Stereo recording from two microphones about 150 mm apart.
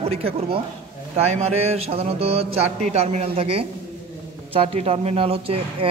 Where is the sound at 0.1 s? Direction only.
40° right (ahead or behind).